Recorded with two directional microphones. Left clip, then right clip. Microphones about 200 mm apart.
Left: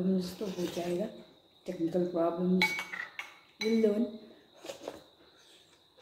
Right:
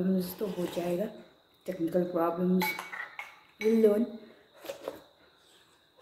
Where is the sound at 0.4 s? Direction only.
25° right (ahead or behind).